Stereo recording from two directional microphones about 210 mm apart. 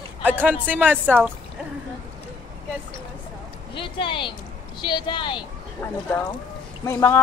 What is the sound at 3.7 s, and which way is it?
Speech, 25° left (ahead or behind).